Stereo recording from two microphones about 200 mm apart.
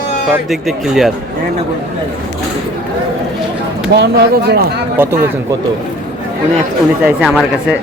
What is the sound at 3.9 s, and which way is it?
Speech, 55° right (ahead or behind).